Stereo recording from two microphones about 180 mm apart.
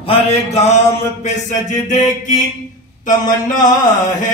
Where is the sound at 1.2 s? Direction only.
45° left (ahead or behind).